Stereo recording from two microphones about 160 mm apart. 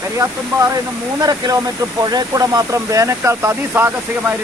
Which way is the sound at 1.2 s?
25° right (ahead or behind).